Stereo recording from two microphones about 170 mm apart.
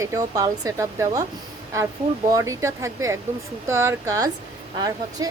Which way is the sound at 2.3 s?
15° right (ahead or behind).